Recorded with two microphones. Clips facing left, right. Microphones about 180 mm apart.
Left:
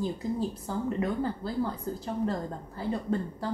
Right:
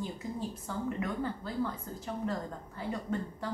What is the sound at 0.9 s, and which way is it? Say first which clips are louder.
A woman's voice: left 5 dB; 35° left (ahead or behind).